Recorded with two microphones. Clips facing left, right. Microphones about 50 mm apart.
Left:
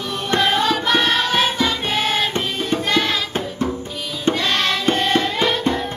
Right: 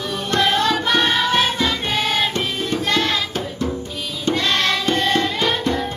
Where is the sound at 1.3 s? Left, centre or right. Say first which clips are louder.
Even; centre.